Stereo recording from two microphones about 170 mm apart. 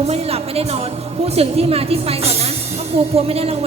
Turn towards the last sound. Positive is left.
turn(degrees=-35)  # may be behind; listen again after turning